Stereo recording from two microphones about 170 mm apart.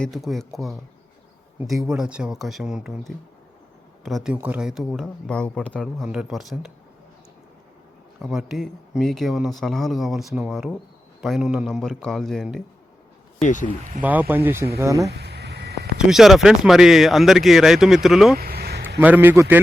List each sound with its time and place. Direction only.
0.0 s speech: centre (ahead or behind)
8.2 s speech: 5° right (ahead or behind)
13.4 s speech: 50° left (ahead or behind)
14.0 s speech: 10° right (ahead or behind)
15.1 s a sound: 75° right (ahead or behind)
16.0 s speech: centre (ahead or behind)
18.3 s a sound: 65° right (ahead or behind)
18.9 s speech: 10° right (ahead or behind)